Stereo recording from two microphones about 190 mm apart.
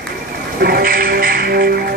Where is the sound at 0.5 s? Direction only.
55° right (ahead or behind).